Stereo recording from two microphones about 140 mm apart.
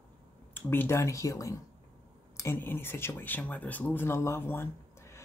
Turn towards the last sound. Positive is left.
turn(degrees=20)  # may be behind; listen again after turning